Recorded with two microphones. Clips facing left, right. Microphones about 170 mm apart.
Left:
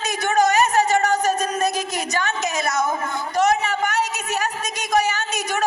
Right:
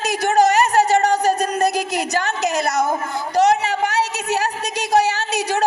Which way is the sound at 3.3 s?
35° right (ahead or behind).